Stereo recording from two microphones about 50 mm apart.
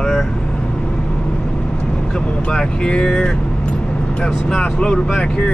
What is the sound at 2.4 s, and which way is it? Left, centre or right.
Speech, left.